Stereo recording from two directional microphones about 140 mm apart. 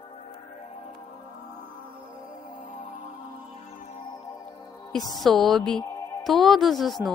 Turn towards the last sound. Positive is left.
turn(degrees=0)  # may be behind; listen again after turning